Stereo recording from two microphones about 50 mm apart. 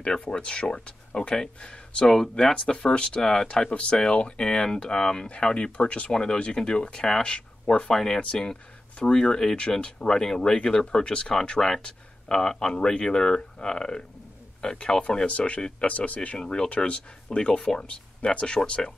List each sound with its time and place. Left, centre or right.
0.2 s speech: left
7.9 s speech: centre